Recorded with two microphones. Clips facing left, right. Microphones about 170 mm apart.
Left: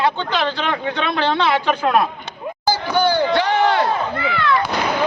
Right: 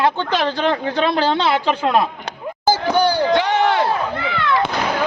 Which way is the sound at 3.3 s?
20° right (ahead or behind).